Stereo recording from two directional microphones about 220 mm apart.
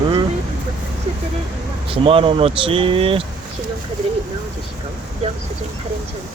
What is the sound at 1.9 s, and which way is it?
Speech, 25° right (ahead or behind).